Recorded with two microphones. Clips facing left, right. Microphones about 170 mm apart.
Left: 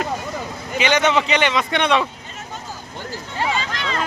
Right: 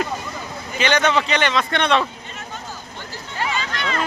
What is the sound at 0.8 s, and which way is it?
A man's voice, 20° left (ahead or behind).